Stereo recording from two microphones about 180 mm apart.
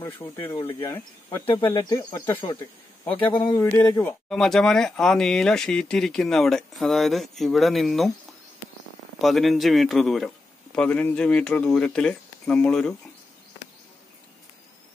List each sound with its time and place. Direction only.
0.0 s speech: 15° left (ahead or behind)
0.6 s speech: 30° left (ahead or behind)
0.8 s speech: 15° left (ahead or behind)
4.3 s speech: centre (ahead or behind)
9.2 s speech: centre (ahead or behind)